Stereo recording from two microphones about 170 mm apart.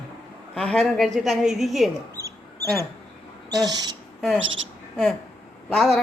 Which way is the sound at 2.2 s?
15° right (ahead or behind).